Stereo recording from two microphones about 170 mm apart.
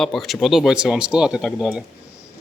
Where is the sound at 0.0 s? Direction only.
Centre (ahead or behind).